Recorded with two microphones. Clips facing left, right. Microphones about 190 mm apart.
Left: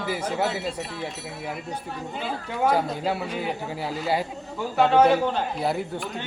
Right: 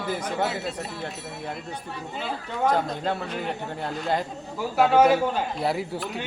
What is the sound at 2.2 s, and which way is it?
A man's voice, 10° left (ahead or behind).